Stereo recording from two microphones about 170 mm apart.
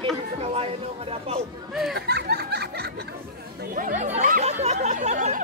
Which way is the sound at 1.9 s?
70° right (ahead or behind).